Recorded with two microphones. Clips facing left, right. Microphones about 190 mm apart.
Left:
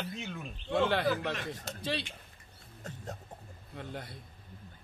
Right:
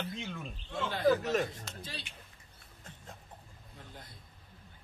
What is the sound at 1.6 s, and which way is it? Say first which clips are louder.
Speech: left 10 dB; 70° left (ahead or behind).